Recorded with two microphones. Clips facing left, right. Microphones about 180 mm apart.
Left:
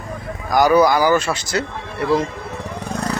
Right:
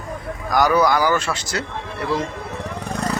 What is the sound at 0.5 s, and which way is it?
Speech, 10° left (ahead or behind).